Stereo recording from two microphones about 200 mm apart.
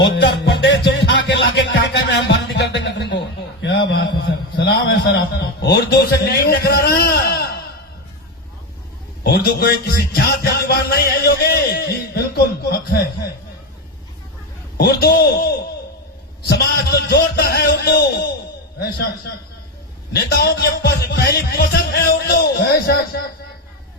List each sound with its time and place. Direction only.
0.2 s music: 60° left (ahead or behind)
3.6 s a sound: 60° left (ahead or behind)
9.2 s music: 55° left (ahead or behind)
14.8 s speech: 50° left (ahead or behind)
16.5 s a sound: 55° left (ahead or behind)
20.1 s speech: 55° left (ahead or behind)